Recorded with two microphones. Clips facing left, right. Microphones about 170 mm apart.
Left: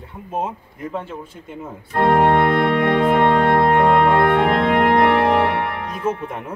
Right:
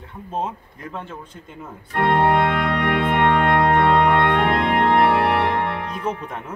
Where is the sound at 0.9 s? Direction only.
5° left (ahead or behind).